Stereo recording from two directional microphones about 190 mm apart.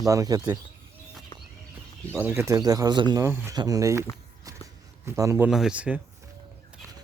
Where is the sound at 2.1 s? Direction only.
10° right (ahead or behind).